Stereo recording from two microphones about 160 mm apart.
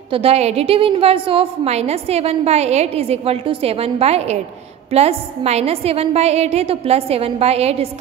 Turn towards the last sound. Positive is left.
turn(degrees=-40)  # may be behind; listen again after turning